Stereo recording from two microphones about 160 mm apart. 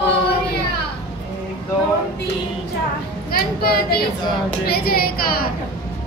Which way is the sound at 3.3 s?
70° left (ahead or behind).